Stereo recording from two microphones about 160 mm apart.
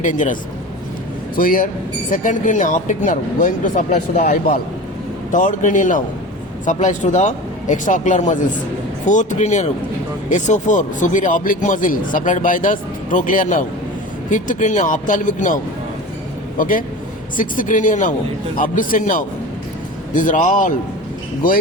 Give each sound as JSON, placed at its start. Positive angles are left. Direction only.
{"t": 0.0, "sound": "speech", "side_deg": 50}
{"t": 1.4, "sound": "speech", "side_deg": 60}
{"t": 5.3, "sound": "speech", "side_deg": 55}
{"t": 16.6, "sound": "speech", "side_deg": 60}